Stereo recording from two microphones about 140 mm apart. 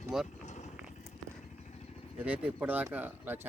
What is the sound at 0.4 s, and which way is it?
Vehicle, 55° left (ahead or behind).